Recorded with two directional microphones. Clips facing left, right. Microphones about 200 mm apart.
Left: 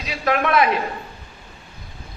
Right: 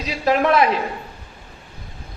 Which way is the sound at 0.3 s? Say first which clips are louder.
Right 2 dB; 30° right (ahead or behind).